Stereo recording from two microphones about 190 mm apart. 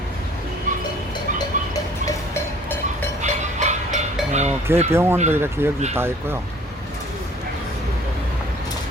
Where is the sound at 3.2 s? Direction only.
40° right (ahead or behind).